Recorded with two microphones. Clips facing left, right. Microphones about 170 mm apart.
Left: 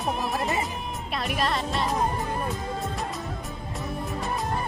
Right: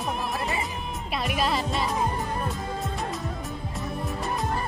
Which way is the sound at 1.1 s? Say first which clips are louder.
Right 1 dB; centre (ahead or behind).